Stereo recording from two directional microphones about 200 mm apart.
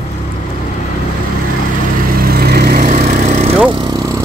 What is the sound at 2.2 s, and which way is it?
Vehicle, 50° right (ahead or behind).